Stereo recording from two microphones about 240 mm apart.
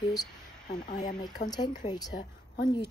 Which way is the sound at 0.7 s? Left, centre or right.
Left.